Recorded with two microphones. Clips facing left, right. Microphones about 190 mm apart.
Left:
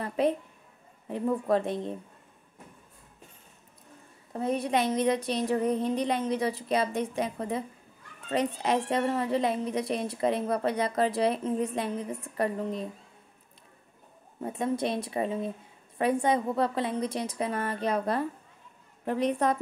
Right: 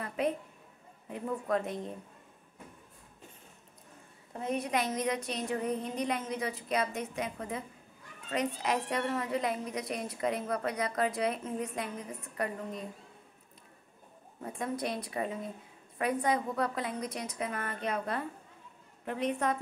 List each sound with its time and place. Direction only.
0.0 s a sound: 30° left (ahead or behind)
1.0 s a woman's voice: 30° left (ahead or behind)
4.3 s a woman's voice: 35° left (ahead or behind)
14.4 s a woman's voice: 25° left (ahead or behind)